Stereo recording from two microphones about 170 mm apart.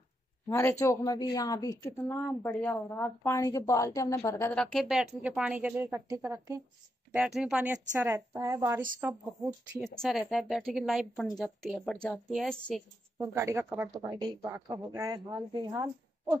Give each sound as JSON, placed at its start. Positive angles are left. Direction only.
{"t": 0.5, "sound": "speech", "side_deg": 15}
{"t": 4.6, "sound": "speech", "side_deg": 0}
{"t": 7.1, "sound": "a woman's voice", "side_deg": -5}
{"t": 8.0, "sound": "speech", "side_deg": -15}
{"t": 9.8, "sound": "a woman's voice", "side_deg": 0}
{"t": 13.2, "sound": "speech", "side_deg": -15}
{"t": 14.0, "sound": "a woman's voice", "side_deg": -25}